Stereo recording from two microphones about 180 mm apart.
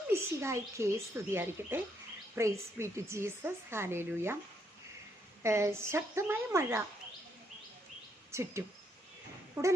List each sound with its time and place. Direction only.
0.1 s a woman's voice: 15° right (ahead or behind)
5.4 s a woman's voice: 15° right (ahead or behind)
8.3 s a woman's voice: 15° right (ahead or behind)